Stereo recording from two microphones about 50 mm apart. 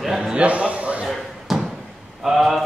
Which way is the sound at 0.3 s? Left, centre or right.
Right.